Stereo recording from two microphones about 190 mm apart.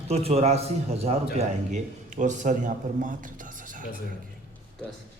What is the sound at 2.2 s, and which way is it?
Speech, 40° right (ahead or behind).